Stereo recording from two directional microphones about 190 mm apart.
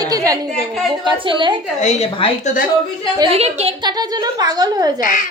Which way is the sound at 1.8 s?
35° left (ahead or behind).